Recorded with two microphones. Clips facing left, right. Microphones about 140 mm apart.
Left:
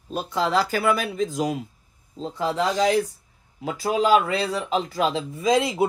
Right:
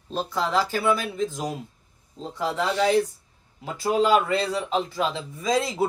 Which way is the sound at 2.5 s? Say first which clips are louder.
Left 2 dB; 35° left (ahead or behind).